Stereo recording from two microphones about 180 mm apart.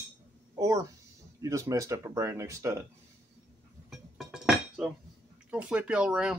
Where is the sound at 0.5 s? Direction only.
20° right (ahead or behind).